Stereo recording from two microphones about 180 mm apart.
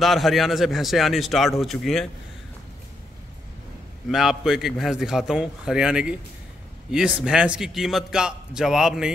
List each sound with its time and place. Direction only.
0.0 s a man's voice: centre (ahead or behind)
4.1 s a man's voice: centre (ahead or behind)